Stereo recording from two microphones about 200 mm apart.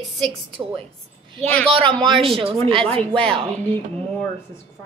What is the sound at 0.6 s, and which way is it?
A woman's voice, 15° right (ahead or behind).